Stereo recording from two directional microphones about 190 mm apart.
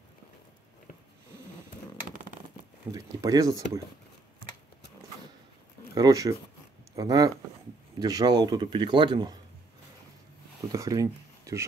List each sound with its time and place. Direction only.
2.9 s speech: 20° right (ahead or behind)
5.9 s speech: 20° right (ahead or behind)
10.7 s speech: 20° right (ahead or behind)